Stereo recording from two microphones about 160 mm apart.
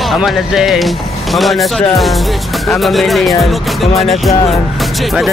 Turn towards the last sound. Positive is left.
turn(degrees=0)  # may be behind; listen again after turning